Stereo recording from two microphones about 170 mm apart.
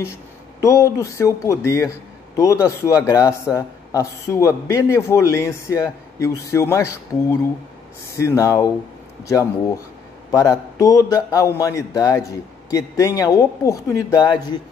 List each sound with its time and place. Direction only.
0.0 s a man's voice: 15° left (ahead or behind)